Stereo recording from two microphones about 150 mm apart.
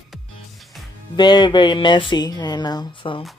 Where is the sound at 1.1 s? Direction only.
30° left (ahead or behind).